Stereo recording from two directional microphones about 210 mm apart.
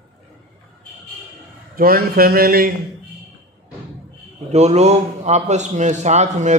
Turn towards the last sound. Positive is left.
turn(degrees=-35)  # may be behind; listen again after turning